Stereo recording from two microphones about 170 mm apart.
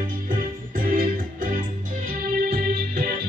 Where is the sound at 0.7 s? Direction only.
55° right (ahead or behind).